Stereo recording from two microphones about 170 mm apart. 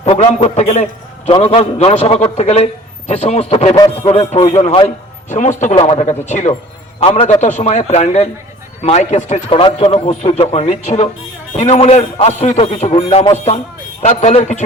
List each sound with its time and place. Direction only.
0.0 s a sound: 35° left (ahead or behind)
0.4 s a man's voice: 45° left (ahead or behind)
7.4 s speech: 45° left (ahead or behind)
9.5 s a man's voice: 35° left (ahead or behind)